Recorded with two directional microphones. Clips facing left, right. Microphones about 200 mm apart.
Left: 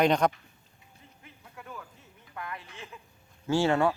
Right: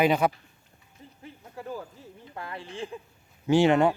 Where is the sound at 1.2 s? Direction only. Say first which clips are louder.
Right 8 dB; 30° right (ahead or behind).